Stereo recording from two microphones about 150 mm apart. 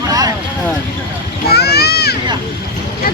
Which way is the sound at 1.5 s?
90° left.